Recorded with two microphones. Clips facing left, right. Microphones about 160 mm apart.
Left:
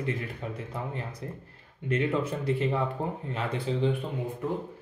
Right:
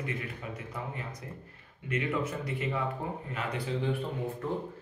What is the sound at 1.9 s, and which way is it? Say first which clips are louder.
Speech: left 4 dB; 30° left (ahead or behind).